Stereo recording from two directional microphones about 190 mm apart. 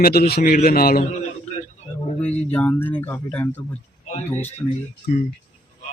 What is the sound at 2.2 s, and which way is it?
Speech, 5° left (ahead or behind).